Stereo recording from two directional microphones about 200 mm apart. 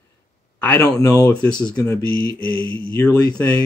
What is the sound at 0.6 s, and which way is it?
Speech, 10° left (ahead or behind).